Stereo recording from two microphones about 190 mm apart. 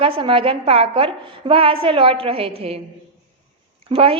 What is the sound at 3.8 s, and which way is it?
Speech, 30° right (ahead or behind).